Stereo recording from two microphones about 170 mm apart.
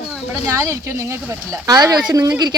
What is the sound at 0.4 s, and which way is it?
Speech, 15° right (ahead or behind).